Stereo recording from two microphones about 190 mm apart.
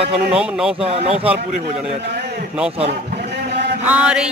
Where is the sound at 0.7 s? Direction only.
30° right (ahead or behind).